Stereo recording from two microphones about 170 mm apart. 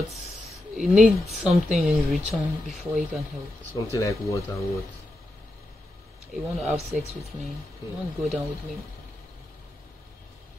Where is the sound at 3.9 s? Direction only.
20° left (ahead or behind).